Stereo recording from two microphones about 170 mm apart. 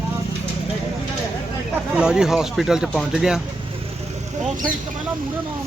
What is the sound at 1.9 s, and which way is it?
Speech, 5° right (ahead or behind).